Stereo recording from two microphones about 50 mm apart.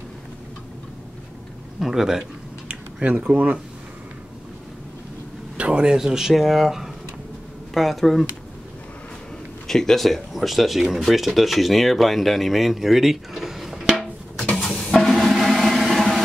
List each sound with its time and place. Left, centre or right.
1.8 s speech: centre
3.3 s speech: right
5.6 s speech: centre
9.7 s speech: centre
14.9 s drum: centre